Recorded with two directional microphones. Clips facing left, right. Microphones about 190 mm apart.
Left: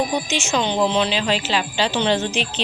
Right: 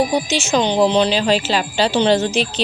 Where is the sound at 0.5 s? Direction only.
35° right (ahead or behind).